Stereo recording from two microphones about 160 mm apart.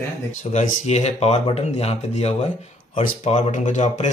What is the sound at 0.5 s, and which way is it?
Speech, 45° left (ahead or behind).